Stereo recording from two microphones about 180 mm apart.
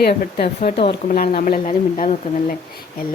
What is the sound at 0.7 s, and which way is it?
Speech, 30° left (ahead or behind).